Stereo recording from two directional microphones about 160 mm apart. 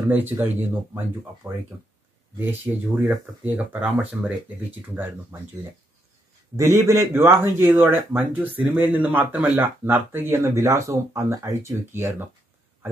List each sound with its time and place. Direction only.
0.1 s speech: 10° right (ahead or behind)
6.5 s speech: 20° right (ahead or behind)